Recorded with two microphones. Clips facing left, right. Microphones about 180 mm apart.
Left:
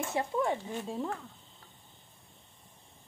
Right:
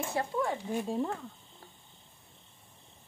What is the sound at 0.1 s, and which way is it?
Speech, 20° left (ahead or behind).